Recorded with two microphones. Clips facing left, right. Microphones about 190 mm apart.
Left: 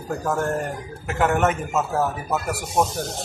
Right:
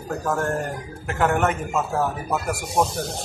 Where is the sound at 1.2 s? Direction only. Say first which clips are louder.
Left 1 dB; 5° left (ahead or behind).